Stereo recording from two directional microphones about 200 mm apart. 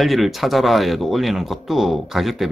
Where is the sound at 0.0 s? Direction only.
Centre (ahead or behind).